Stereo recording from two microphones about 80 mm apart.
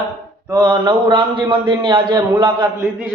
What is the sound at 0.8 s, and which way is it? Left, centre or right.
A man's voice, right.